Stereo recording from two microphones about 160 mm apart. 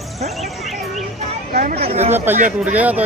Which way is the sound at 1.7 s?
40° right (ahead or behind).